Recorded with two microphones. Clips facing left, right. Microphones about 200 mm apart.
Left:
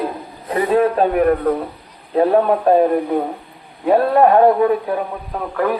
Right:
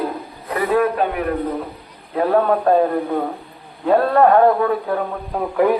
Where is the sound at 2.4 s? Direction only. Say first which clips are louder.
Left 2 dB; 15° left (ahead or behind).